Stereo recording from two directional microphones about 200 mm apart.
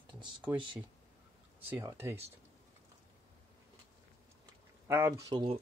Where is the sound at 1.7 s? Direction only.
15° right (ahead or behind).